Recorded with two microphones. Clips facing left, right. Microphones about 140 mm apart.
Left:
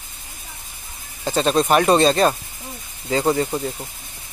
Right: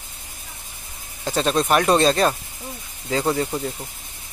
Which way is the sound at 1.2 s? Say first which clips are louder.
Left 2 dB; centre (ahead or behind).